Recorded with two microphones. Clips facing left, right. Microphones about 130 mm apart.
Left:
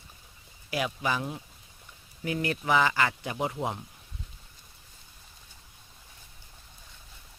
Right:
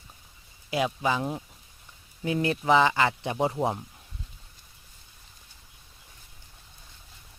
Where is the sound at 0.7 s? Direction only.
25° right (ahead or behind).